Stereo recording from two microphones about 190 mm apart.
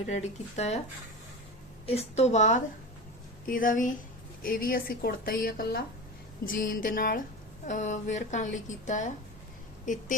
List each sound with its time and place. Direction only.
0.1 s speech: 35° left (ahead or behind)
1.9 s a woman's voice: 35° left (ahead or behind)